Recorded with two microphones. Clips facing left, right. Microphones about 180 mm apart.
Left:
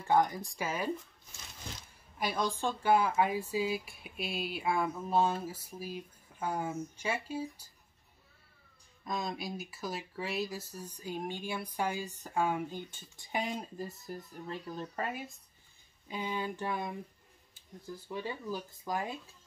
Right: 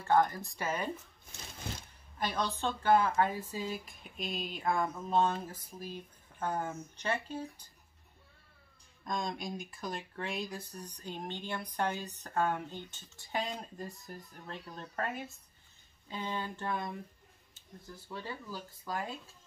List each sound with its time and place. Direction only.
0.0 s speech: 15° left (ahead or behind)
2.1 s speech: 10° left (ahead or behind)
9.0 s speech: 5° left (ahead or behind)
13.7 s speech: centre (ahead or behind); by 19.1 s 15° left (ahead or behind)